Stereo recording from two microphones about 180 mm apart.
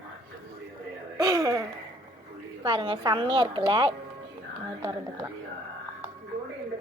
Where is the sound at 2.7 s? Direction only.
25° right (ahead or behind).